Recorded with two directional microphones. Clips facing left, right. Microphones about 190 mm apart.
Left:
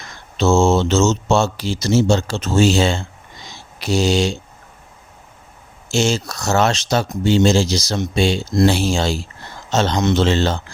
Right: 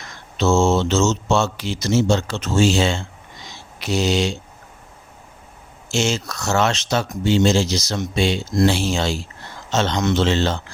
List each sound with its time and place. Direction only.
0.3 s speech: 30° left (ahead or behind)
5.9 s speech: 35° left (ahead or behind)